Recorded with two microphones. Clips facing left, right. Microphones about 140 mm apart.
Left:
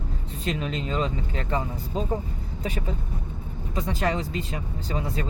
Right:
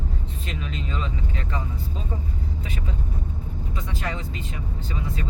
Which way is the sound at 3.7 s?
35° left (ahead or behind).